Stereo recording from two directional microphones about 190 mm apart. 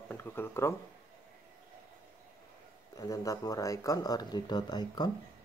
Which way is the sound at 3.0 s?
20° left (ahead or behind).